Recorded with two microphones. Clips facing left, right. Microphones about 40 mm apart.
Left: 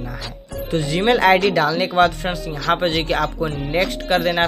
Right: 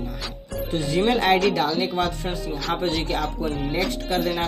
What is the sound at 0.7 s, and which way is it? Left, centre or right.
Speech, left.